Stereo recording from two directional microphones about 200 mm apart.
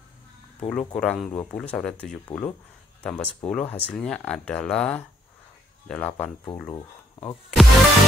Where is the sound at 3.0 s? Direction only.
5° left (ahead or behind).